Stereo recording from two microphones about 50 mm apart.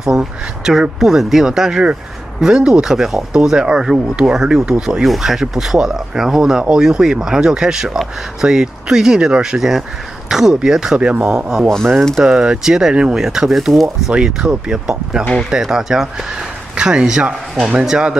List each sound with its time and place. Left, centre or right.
0.0 s speech: centre
5.0 s speech: centre
9.6 s speech: centre; by 11.3 s right
11.3 s speech: centre
14.1 s speech: centre